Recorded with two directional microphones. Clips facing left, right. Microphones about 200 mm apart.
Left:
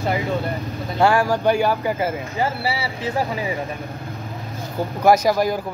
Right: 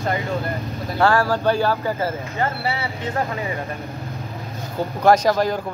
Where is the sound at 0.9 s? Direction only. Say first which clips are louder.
Left 1 dB; 15° left (ahead or behind).